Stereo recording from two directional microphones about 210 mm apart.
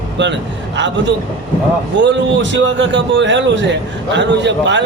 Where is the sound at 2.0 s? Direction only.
60° right (ahead or behind).